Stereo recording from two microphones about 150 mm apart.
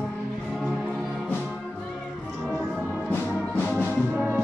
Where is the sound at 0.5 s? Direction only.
Centre (ahead or behind).